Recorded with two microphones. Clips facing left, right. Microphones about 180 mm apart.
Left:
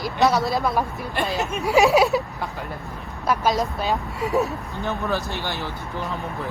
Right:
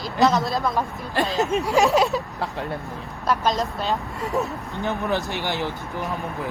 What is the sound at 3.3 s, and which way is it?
Speech, 10° left (ahead or behind).